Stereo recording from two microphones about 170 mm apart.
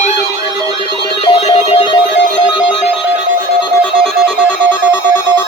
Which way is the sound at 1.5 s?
30° left (ahead or behind).